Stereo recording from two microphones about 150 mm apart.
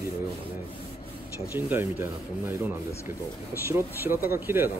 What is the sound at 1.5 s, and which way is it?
Speech, 15° right (ahead or behind).